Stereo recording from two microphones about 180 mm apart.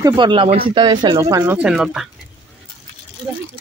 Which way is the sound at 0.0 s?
25° right (ahead or behind).